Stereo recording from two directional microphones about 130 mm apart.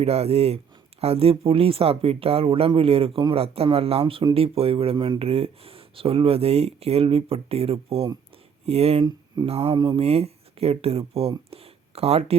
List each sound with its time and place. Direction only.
0.0 s speech: 50° right (ahead or behind)
9.0 s speech: 30° right (ahead or behind)
9.5 s speech: 50° right (ahead or behind)